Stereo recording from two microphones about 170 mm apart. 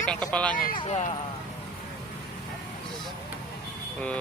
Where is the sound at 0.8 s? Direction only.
40° left (ahead or behind).